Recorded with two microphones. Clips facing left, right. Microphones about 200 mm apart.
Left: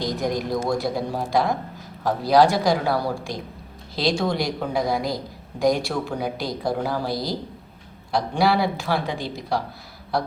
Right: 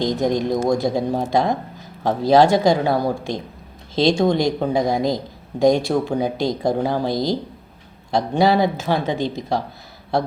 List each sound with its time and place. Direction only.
0.0 s speech: 25° right (ahead or behind)